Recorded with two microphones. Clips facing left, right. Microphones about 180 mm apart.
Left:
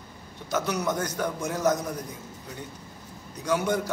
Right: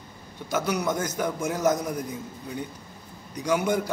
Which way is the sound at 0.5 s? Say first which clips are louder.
Right 1 dB; 10° right (ahead or behind).